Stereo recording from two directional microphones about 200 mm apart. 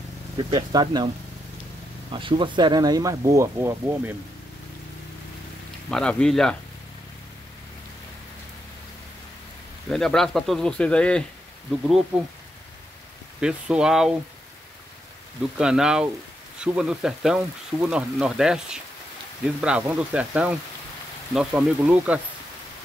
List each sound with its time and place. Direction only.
0.5 s speech: 20° right (ahead or behind)
5.9 s speech: 5° left (ahead or behind)
9.8 s speech: centre (ahead or behind)
13.4 s speech: 5° right (ahead or behind)
15.5 s speech: 5° right (ahead or behind)